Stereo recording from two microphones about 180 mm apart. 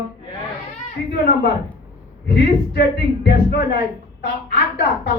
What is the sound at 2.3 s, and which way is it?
Speech, 60° left (ahead or behind).